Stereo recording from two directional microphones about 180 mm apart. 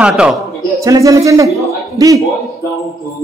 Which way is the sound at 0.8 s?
15° right (ahead or behind).